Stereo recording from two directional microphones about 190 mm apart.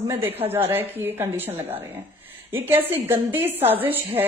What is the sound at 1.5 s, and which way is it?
Speech, 30° right (ahead or behind).